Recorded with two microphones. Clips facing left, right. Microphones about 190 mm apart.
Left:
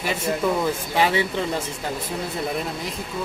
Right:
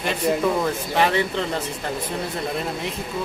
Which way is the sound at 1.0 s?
10° left (ahead or behind).